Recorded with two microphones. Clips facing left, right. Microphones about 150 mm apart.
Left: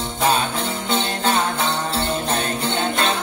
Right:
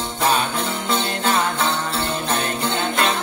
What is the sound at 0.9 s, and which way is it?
Music, 30° left (ahead or behind).